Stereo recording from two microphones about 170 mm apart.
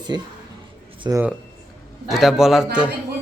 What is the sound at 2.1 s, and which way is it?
Speech, centre (ahead or behind).